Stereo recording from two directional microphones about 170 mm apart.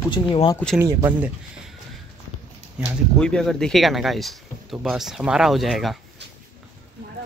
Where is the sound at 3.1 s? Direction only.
5° left (ahead or behind).